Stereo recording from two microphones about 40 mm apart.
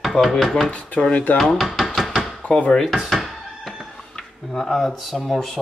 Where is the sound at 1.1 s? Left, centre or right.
Left.